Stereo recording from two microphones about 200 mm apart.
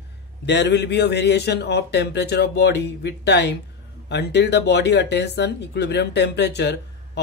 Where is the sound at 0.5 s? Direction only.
60° left (ahead or behind).